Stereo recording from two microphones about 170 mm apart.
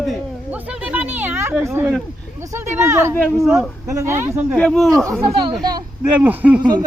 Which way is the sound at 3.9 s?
15° right (ahead or behind).